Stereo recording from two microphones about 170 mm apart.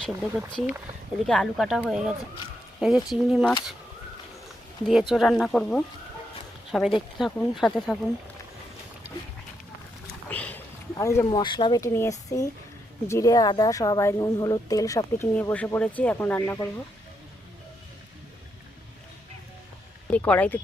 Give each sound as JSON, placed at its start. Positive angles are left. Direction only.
{"t": 0.0, "sound": "speech", "side_deg": 5}
{"t": 4.9, "sound": "speech", "side_deg": -5}
{"t": 10.2, "sound": "a sound", "side_deg": 10}
{"t": 10.9, "sound": "speech", "side_deg": 15}
{"t": 11.3, "sound": "speech", "side_deg": 30}
{"t": 20.1, "sound": "speech", "side_deg": 10}